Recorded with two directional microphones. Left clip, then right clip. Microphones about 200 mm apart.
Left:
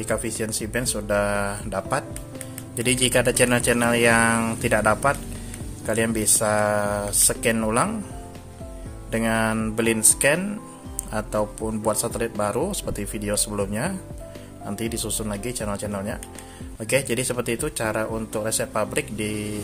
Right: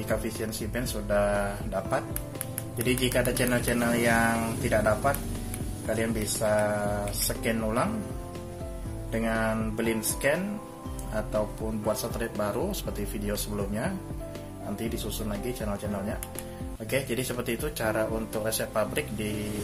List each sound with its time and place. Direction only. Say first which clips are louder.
0.1 s speech: left 5 dB; 40° left (ahead or behind)
9.1 s speech: left 5 dB; 40° left (ahead or behind)